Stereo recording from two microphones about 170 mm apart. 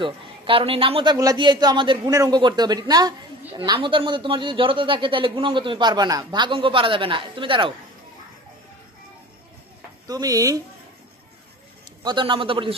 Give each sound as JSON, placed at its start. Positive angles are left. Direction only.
{"t": 0.0, "sound": "a woman's voice", "side_deg": -30}
{"t": 1.1, "sound": "a woman's voice", "side_deg": -20}
{"t": 10.0, "sound": "a woman's voice", "side_deg": -20}
{"t": 12.0, "sound": "a woman's voice", "side_deg": -25}